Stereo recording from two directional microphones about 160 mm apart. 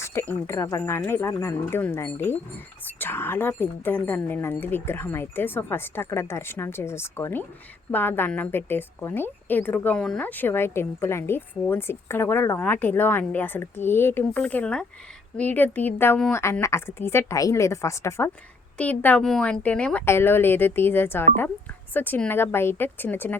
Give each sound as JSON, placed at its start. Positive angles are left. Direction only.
{"t": 0.0, "sound": "a woman's voice", "side_deg": 15}